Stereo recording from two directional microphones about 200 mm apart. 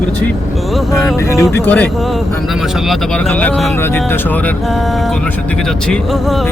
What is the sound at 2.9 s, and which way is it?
Speech, 5° left (ahead or behind).